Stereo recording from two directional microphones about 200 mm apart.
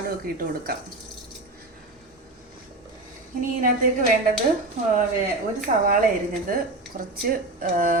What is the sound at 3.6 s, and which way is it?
Speech, 45° right (ahead or behind).